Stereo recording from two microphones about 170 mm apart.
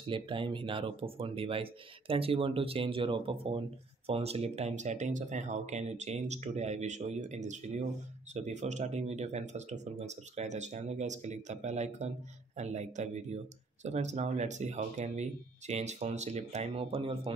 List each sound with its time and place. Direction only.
0.0 s speech: 30° right (ahead or behind)